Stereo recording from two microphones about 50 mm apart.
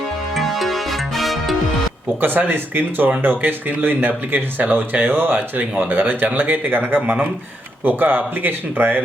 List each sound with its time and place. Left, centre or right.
0.3 s music: centre
2.2 s speech: right